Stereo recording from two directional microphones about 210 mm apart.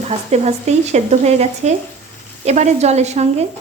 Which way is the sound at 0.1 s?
30° right (ahead or behind).